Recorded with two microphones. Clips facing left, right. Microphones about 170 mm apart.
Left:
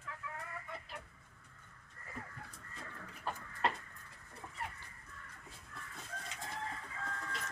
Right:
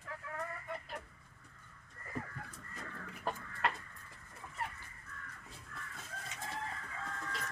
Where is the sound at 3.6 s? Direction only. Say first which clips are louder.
Left 1 dB; 30° left (ahead or behind).